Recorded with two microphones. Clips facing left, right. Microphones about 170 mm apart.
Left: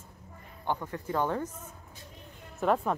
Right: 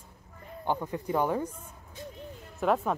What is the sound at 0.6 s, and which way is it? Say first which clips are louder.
Speech: right 2 dB; 15° right (ahead or behind).